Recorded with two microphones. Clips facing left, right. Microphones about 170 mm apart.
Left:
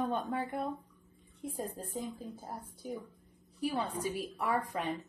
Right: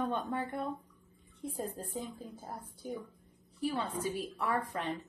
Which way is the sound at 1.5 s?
10° left (ahead or behind).